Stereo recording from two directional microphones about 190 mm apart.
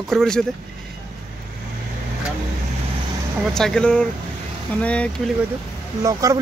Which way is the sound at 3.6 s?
5° left (ahead or behind).